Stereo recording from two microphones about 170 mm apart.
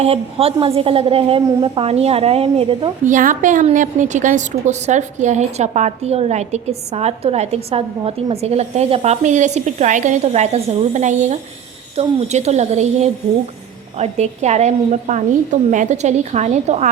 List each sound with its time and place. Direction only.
0.0 s a woman's voice: 35° right (ahead or behind)
3.1 s a woman's voice: 50° right (ahead or behind)